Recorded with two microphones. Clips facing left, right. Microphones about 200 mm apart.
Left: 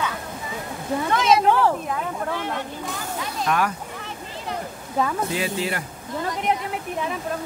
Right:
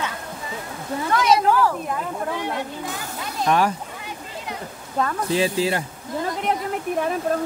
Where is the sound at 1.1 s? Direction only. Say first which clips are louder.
Right 1 dB; 25° left (ahead or behind).